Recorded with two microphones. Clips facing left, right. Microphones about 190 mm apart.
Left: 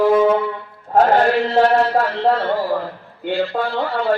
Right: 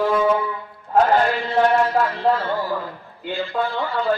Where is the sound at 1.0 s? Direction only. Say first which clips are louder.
Left 3 dB; 50° left (ahead or behind).